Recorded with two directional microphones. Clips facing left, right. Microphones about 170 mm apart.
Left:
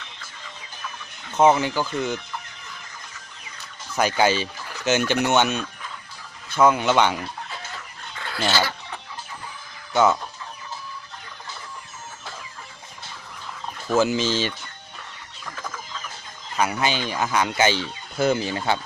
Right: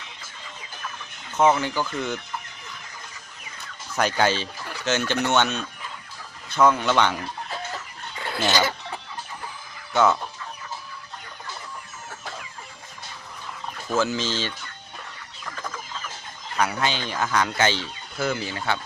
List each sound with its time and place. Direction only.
1.5 s speech: 10° left (ahead or behind)
3.9 s speech: 5° left (ahead or behind)
8.2 s speech: 20° right (ahead or behind)
9.9 s speech: 5° left (ahead or behind)
13.9 s speech: 15° left (ahead or behind)
16.6 s speech: 10° left (ahead or behind)